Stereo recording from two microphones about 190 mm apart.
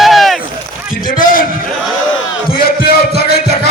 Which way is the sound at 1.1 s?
50° left (ahead or behind).